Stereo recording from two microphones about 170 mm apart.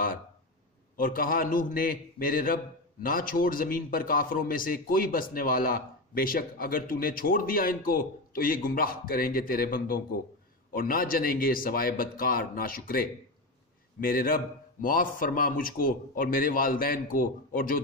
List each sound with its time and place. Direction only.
0.9 s a man's voice: 55° left (ahead or behind)